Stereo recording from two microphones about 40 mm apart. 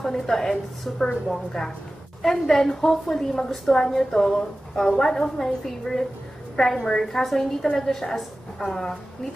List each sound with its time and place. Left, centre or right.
0.0 s a woman's voice: centre